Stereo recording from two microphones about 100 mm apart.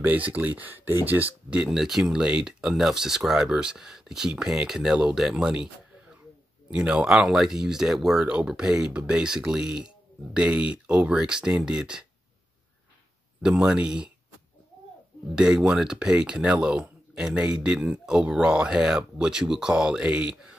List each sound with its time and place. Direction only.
0.0 s speech: 15° right (ahead or behind)
1.6 s speech: 5° right (ahead or behind)
6.7 s speech: 10° right (ahead or behind)
13.4 s speech: 5° right (ahead or behind)
15.3 s speech: 10° right (ahead or behind)